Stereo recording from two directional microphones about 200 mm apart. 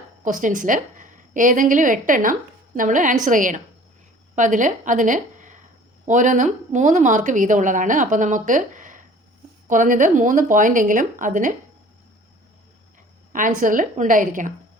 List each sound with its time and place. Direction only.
0.3 s a woman's voice: 40° right (ahead or behind)
13.6 s a woman's voice: 40° right (ahead or behind)